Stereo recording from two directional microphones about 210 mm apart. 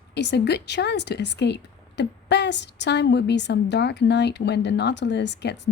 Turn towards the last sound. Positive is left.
turn(degrees=55)  # may be behind; listen again after turning